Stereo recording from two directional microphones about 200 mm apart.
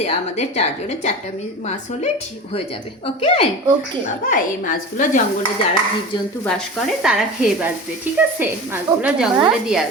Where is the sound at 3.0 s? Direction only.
30° left (ahead or behind).